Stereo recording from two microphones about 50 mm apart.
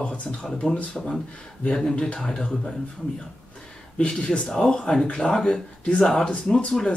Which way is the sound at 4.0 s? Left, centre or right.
Left.